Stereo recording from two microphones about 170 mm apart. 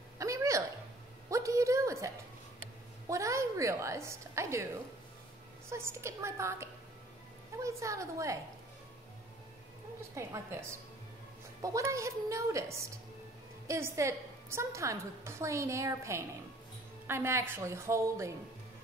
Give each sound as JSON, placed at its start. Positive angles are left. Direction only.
{"t": 0.2, "sound": "a sound", "side_deg": -20}
{"t": 5.7, "sound": "a woman's voice", "side_deg": -15}
{"t": 10.1, "sound": "a woman's voice", "side_deg": -15}